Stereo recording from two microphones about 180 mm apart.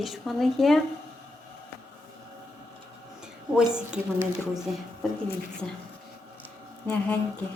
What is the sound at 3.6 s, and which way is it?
Speech, 5° right (ahead or behind).